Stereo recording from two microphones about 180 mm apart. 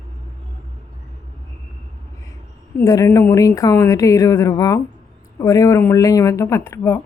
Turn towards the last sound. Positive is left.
turn(degrees=15)  # may be behind; listen again after turning